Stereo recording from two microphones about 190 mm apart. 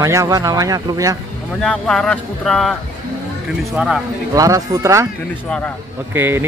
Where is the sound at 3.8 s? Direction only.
5° right (ahead or behind).